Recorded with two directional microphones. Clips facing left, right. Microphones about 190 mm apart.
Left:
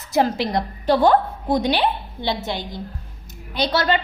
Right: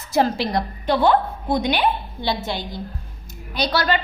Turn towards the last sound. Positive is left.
turn(degrees=25)  # may be behind; listen again after turning